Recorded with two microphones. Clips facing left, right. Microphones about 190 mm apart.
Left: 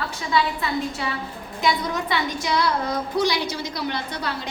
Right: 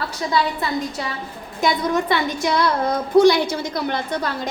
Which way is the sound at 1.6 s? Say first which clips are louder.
Right 4 dB; 50° right (ahead or behind).